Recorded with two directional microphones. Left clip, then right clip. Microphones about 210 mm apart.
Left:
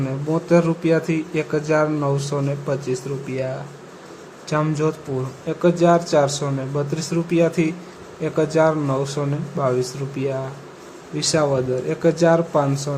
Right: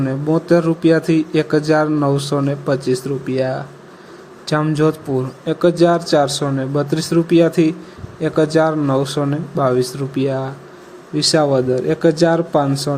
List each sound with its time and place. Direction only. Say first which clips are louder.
0.0 s speech: right 5 dB; 15° right (ahead or behind)